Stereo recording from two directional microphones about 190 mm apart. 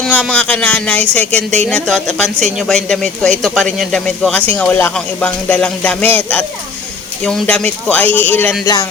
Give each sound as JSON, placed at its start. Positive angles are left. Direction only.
{"t": 0.0, "sound": "speech", "side_deg": 5}